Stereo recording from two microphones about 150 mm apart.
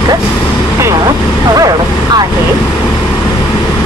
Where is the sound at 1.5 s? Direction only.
25° right (ahead or behind).